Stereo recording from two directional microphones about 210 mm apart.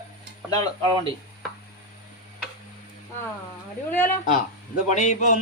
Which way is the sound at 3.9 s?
10° left (ahead or behind).